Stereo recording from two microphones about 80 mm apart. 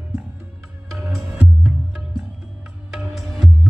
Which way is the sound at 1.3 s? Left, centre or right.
Centre.